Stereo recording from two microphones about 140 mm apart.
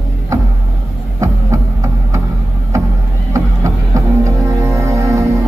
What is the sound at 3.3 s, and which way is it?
Music, 25° right (ahead or behind).